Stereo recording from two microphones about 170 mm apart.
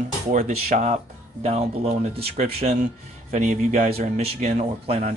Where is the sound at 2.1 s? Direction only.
35° right (ahead or behind).